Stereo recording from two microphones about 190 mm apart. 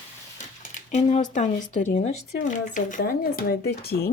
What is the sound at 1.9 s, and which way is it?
Speech, 40° left (ahead or behind).